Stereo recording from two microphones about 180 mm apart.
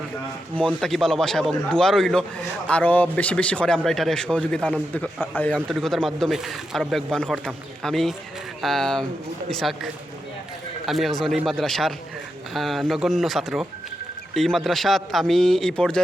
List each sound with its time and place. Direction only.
0.8 s a man's voice: centre (ahead or behind)